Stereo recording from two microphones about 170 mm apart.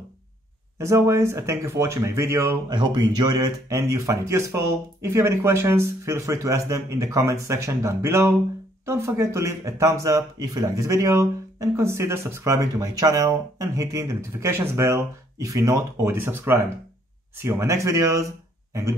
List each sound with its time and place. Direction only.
0.7 s speech: 15° right (ahead or behind)